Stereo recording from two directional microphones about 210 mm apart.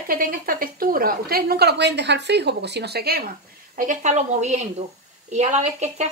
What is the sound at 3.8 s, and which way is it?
Speech, 35° right (ahead or behind).